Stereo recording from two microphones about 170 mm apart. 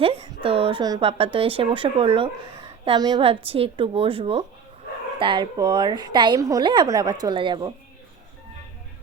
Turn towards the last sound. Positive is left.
turn(degrees=-25)  # may be behind; listen again after turning